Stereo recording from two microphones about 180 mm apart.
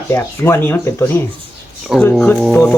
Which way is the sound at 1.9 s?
Centre (ahead or behind).